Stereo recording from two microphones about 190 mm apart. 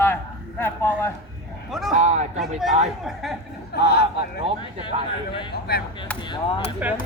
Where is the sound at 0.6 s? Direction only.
10° left (ahead or behind).